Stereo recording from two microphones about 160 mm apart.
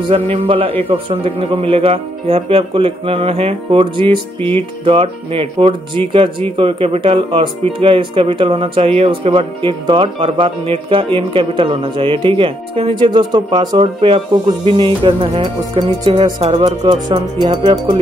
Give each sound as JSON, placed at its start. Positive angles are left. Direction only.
{"t": 0.1, "sound": "speech", "side_deg": -35}